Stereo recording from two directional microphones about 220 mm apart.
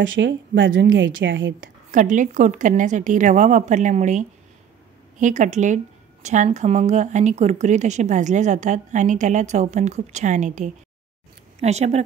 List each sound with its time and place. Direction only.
0.0 s a woman's voice: 60° right (ahead or behind)
1.9 s a woman's voice: 35° right (ahead or behind)